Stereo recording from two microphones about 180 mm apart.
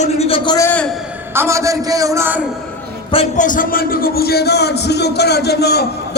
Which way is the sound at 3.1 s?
45° left (ahead or behind).